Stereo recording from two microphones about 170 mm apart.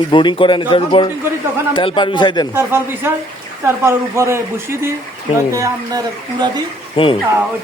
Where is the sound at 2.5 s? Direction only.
15° right (ahead or behind).